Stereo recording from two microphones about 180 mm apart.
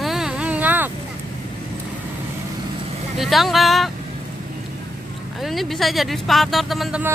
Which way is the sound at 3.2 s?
Centre (ahead or behind).